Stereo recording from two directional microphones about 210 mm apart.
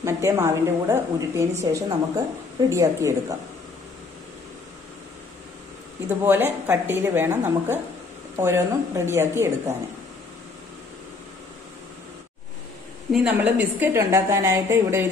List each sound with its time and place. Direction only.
0.0 s a woman's voice: 15° right (ahead or behind)
6.0 s a woman's voice: 10° right (ahead or behind)
13.1 s a woman's voice: 5° right (ahead or behind)